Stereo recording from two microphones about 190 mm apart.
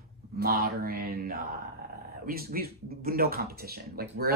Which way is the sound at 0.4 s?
55° right (ahead or behind).